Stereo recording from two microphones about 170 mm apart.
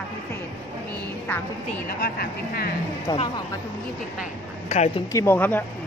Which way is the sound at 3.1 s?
25° left (ahead or behind).